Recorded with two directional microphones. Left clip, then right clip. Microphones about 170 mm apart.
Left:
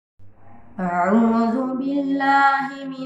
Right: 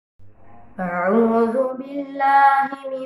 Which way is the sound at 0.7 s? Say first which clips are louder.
Right 1 dB; 20° right (ahead or behind).